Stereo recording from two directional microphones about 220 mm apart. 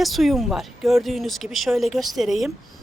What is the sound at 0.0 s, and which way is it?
Speech, centre (ahead or behind).